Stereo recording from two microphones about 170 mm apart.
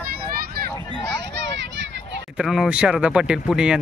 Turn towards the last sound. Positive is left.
turn(degrees=-5)  # may be behind; listen again after turning